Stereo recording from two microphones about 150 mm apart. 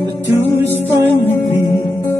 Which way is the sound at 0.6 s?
15° right (ahead or behind).